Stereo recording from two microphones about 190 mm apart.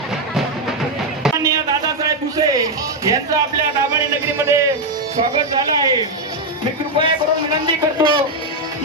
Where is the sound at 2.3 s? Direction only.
20° right (ahead or behind).